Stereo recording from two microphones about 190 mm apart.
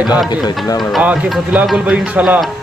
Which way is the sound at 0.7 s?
Centre (ahead or behind).